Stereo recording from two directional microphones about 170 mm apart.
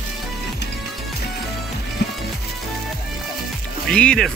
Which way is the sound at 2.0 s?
75° left (ahead or behind).